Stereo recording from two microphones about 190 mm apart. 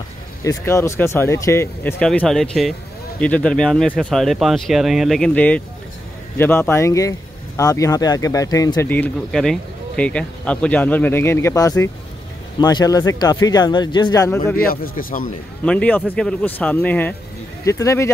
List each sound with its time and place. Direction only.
0.4 s speech: 15° left (ahead or behind)
8.9 s speech: 5° left (ahead or behind)
14.6 s speech: 50° left (ahead or behind)
15.6 s speech: 5° left (ahead or behind)